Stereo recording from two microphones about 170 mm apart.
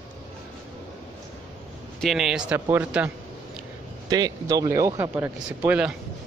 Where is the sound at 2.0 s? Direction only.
Centre (ahead or behind).